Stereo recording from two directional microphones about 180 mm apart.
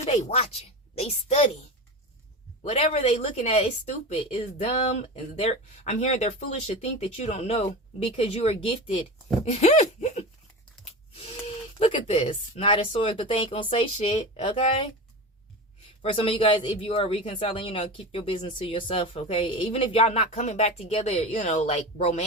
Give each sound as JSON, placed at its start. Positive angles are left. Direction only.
{"t": 0.0, "sound": "speech", "side_deg": 35}
{"t": 2.6, "sound": "speech", "side_deg": 35}
{"t": 16.0, "sound": "speech", "side_deg": 30}